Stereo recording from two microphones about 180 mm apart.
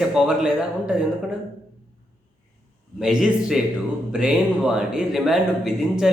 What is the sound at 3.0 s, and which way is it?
Speech, 5° right (ahead or behind).